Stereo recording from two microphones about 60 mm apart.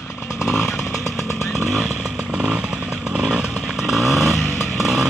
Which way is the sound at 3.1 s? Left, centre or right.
Centre.